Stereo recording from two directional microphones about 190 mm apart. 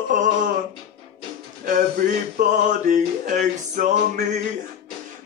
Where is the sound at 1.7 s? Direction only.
50° right (ahead or behind).